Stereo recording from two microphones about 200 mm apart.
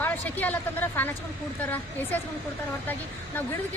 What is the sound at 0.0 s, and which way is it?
A woman's voice, 10° left (ahead or behind).